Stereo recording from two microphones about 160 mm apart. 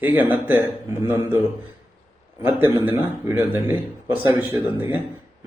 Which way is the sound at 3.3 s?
15° right (ahead or behind).